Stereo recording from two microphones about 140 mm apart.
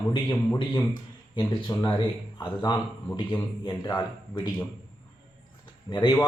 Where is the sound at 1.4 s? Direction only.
30° left (ahead or behind).